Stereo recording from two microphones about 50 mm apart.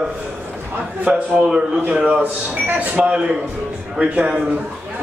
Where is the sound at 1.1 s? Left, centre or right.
Right.